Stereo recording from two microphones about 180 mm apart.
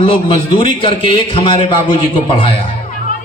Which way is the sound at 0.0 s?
30° left (ahead or behind).